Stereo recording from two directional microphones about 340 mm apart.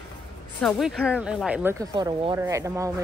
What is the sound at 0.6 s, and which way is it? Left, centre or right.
Speech, centre.